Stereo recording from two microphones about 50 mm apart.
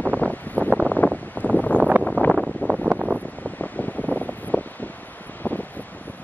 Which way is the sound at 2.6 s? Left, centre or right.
Right.